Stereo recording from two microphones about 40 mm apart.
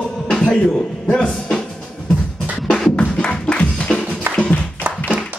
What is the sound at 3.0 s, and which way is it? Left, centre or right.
Music, left.